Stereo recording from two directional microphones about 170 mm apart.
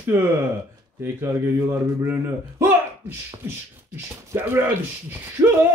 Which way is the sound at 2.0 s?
15° right (ahead or behind).